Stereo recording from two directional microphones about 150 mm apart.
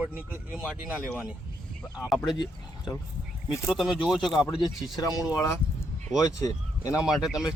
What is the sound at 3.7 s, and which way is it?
Speech, 5° right (ahead or behind).